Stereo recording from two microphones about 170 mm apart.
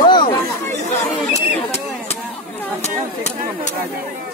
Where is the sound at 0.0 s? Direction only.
25° left (ahead or behind).